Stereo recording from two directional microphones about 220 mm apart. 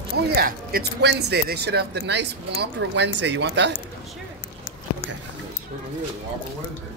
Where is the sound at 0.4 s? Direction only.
45° right (ahead or behind).